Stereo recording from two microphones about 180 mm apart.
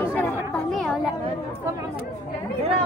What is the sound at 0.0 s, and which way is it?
Chatter, 10° left (ahead or behind).